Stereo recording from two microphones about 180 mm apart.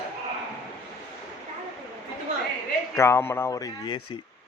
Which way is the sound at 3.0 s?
15° left (ahead or behind).